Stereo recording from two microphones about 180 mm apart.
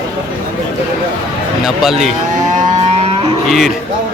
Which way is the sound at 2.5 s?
40° right (ahead or behind).